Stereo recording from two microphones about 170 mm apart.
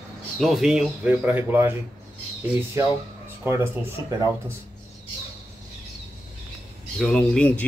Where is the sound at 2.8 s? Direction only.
15° right (ahead or behind).